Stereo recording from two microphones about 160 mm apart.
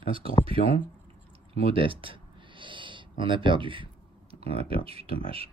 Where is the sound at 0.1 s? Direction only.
35° right (ahead or behind).